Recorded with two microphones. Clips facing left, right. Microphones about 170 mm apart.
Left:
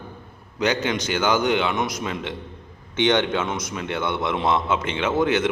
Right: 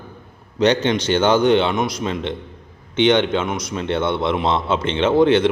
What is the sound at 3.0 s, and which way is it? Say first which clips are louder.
Speech: right 4 dB; 20° right (ahead or behind).